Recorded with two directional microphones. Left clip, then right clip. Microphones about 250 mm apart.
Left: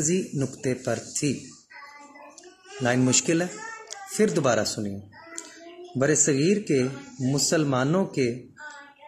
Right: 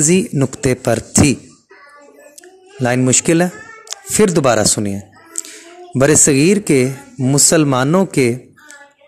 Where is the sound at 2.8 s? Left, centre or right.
Right.